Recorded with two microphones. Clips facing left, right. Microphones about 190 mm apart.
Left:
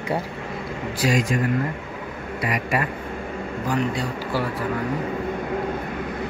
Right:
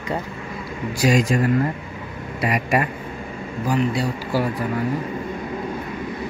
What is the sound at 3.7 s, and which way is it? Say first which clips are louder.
Speech: right 3 dB; 10° right (ahead or behind).